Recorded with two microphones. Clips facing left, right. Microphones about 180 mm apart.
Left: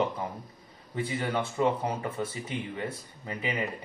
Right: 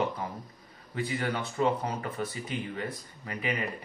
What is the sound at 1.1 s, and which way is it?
Speech, 25° left (ahead or behind).